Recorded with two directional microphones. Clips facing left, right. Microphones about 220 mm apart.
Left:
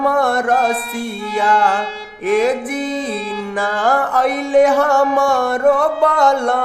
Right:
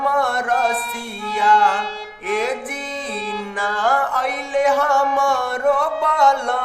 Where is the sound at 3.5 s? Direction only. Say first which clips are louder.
Left 4 dB; 40° left (ahead or behind).